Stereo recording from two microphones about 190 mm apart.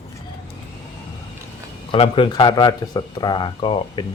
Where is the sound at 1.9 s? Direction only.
25° left (ahead or behind).